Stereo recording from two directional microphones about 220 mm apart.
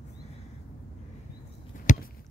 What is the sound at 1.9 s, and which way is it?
Chop, 35° left (ahead or behind).